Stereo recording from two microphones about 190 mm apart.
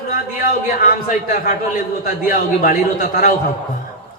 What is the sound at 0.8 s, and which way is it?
A man's voice, 50° left (ahead or behind).